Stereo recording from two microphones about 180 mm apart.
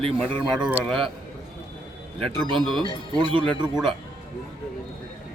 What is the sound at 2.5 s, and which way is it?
Speech, centre (ahead or behind).